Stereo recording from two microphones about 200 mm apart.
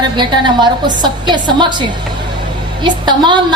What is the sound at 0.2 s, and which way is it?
A woman's voice, 25° right (ahead or behind).